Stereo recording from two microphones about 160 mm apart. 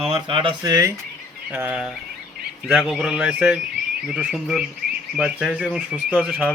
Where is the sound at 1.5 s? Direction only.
10° right (ahead or behind).